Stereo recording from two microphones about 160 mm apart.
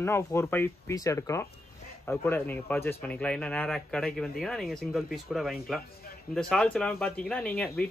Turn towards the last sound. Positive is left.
turn(degrees=5)  # may be behind; listen again after turning